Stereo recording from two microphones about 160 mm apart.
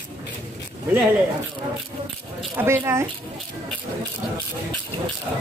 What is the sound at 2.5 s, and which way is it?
Speech, 15° right (ahead or behind).